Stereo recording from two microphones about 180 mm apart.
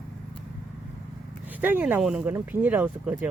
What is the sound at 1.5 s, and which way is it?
Speech, 10° right (ahead or behind).